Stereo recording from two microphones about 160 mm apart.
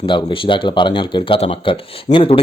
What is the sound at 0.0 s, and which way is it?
Speech, 30° left (ahead or behind).